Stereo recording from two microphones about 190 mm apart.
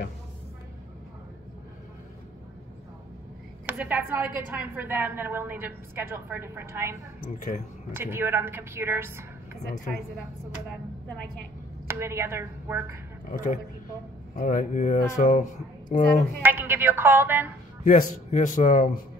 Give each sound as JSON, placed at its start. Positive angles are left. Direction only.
{"t": 3.6, "sound": "a woman's voice", "side_deg": -10}
{"t": 7.3, "sound": "speech", "side_deg": 45}
{"t": 7.9, "sound": "a woman's voice", "side_deg": -10}
{"t": 11.9, "sound": "a woman's voice", "side_deg": -15}
{"t": 13.3, "sound": "speech", "side_deg": 40}
{"t": 16.4, "sound": "a woman's voice", "side_deg": -10}
{"t": 17.8, "sound": "speech", "side_deg": 45}